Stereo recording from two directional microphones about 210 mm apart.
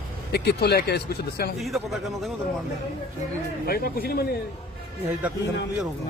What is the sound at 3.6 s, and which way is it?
Speech, 45° left (ahead or behind).